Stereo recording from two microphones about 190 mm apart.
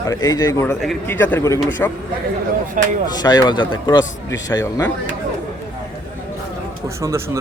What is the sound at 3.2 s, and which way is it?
A man's voice, 20° left (ahead or behind).